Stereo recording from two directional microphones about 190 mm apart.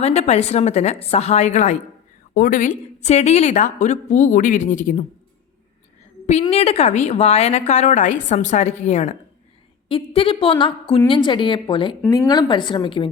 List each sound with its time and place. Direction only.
0.0 s a woman's voice: 35° left (ahead or behind)
6.5 s a woman's voice: 35° left (ahead or behind)